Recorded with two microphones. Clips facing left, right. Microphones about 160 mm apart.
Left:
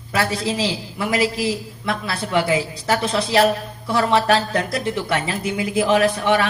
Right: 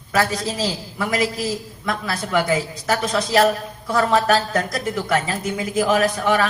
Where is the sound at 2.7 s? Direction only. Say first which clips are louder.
Left 1 dB; 30° left (ahead or behind).